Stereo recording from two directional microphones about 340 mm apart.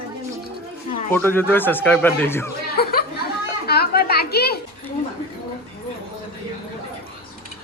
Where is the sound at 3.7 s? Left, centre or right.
Left.